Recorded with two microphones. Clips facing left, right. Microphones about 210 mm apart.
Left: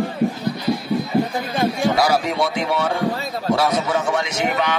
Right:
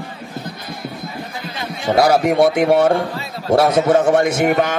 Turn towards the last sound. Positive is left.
turn(degrees=-50)  # may be behind; listen again after turning